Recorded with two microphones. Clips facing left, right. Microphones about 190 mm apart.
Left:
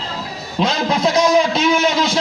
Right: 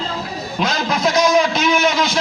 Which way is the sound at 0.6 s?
30° left (ahead or behind).